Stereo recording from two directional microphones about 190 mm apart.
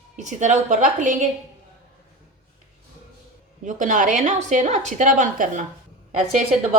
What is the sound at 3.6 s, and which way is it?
A woman's voice, 40° right (ahead or behind).